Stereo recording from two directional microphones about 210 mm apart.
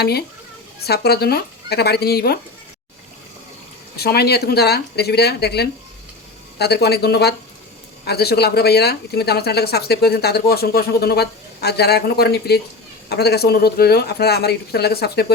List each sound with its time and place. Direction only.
0.0 s speech: 50° left (ahead or behind)
3.9 s speech: 50° left (ahead or behind)